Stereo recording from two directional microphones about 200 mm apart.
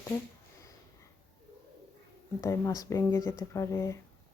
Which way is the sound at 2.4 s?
15° left (ahead or behind).